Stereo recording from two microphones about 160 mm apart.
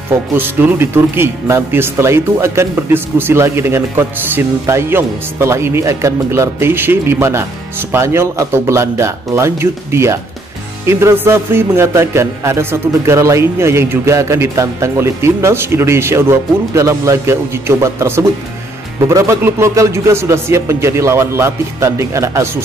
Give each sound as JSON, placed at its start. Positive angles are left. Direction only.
{"t": 0.3, "sound": "speech", "side_deg": -10}